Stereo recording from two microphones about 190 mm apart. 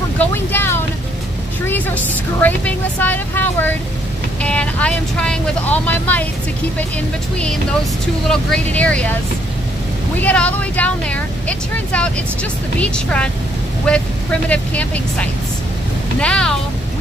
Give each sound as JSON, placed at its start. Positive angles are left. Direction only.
{"t": 0.2, "sound": "a woman's voice", "side_deg": 10}
{"t": 8.3, "sound": "a woman's voice", "side_deg": 5}
{"t": 10.2, "sound": "a woman's voice", "side_deg": 5}